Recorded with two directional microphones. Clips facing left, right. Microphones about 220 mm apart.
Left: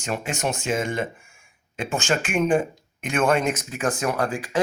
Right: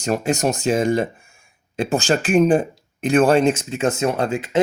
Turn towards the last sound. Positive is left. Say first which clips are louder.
# right 4 dB
turn(degrees=-25)  # may be behind; listen again after turning